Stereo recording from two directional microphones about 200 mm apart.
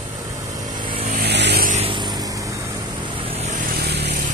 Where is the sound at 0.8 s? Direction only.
30° right (ahead or behind).